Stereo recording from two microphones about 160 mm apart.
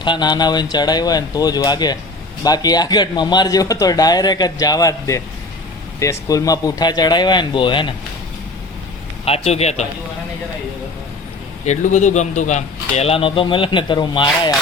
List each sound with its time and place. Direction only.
0.0 s speech: 30° left (ahead or behind)
9.2 s speech: 40° left (ahead or behind)
11.6 s speech: 50° left (ahead or behind); by 14.5 s 30° left (ahead or behind)